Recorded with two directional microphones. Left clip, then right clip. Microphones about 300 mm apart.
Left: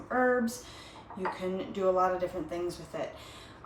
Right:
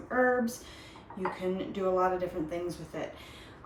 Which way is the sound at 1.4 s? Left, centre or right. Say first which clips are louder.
Left 1 dB; centre.